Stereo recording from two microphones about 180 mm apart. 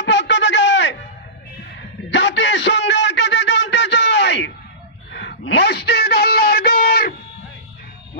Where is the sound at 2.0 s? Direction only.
80° left; by 7.2 s 60° left (ahead or behind).